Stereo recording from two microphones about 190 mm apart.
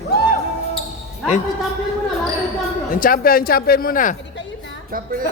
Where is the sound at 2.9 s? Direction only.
45° left (ahead or behind).